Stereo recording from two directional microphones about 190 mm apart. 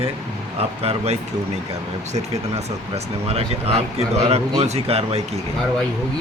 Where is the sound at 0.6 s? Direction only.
30° right (ahead or behind).